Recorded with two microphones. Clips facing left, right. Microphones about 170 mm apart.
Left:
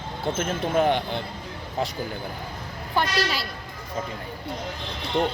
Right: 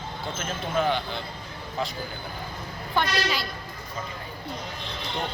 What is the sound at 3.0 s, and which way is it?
Speech, 5° left (ahead or behind).